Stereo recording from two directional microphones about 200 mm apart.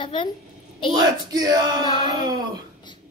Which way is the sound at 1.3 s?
20° right (ahead or behind).